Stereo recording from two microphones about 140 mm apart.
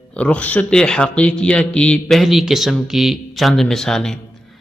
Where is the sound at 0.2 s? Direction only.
10° left (ahead or behind).